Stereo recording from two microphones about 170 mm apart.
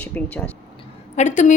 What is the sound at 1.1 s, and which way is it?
Speech, 45° left (ahead or behind).